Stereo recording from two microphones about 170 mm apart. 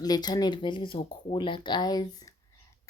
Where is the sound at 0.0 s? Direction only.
25° left (ahead or behind).